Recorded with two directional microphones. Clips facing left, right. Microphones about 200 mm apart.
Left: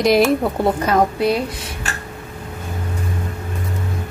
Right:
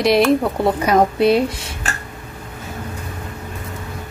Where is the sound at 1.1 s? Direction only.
25° right (ahead or behind).